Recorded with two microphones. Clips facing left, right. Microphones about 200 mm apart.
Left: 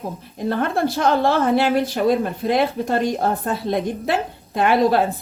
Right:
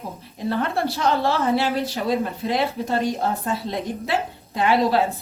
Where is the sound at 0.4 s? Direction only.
50° left (ahead or behind).